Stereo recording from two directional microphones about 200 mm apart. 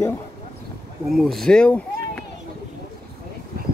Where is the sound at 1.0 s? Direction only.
Centre (ahead or behind).